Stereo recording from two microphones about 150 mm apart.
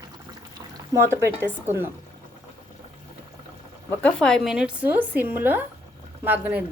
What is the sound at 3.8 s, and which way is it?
A woman's voice, 5° left (ahead or behind).